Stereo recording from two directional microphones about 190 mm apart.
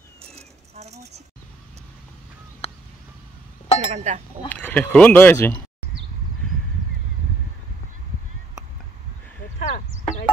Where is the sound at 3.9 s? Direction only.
35° right (ahead or behind).